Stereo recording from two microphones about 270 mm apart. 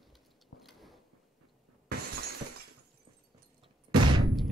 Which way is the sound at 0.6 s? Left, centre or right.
Centre.